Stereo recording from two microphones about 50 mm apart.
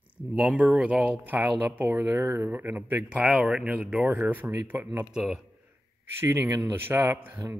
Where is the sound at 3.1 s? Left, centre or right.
Right.